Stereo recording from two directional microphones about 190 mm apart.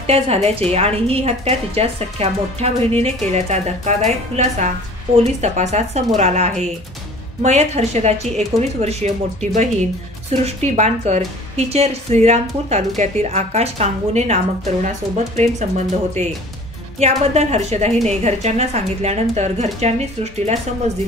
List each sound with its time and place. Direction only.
0.0 s a woman's voice: 35° right (ahead or behind)